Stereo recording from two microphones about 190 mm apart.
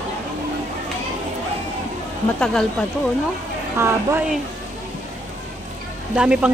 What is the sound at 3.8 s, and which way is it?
Speech, 10° right (ahead or behind).